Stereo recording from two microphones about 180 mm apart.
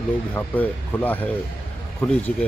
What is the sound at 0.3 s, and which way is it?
Speech, 10° left (ahead or behind).